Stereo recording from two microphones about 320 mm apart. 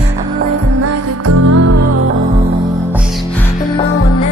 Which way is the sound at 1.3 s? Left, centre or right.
Right.